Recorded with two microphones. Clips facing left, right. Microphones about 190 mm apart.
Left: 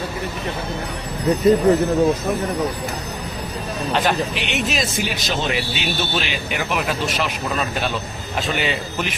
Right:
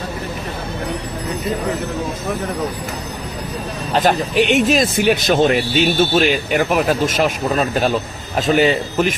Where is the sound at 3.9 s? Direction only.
45° right (ahead or behind).